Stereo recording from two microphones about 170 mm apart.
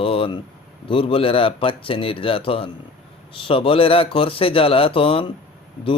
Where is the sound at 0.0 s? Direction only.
30° left (ahead or behind).